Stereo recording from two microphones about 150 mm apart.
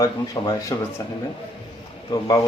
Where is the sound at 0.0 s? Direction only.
20° left (ahead or behind).